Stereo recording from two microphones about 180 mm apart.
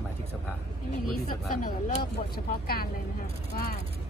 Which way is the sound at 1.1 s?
50° left (ahead or behind).